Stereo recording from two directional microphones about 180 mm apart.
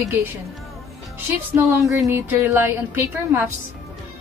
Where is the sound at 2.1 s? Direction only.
10° right (ahead or behind).